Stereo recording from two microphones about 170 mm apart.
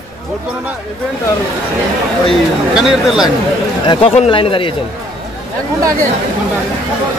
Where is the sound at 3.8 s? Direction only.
35° left (ahead or behind).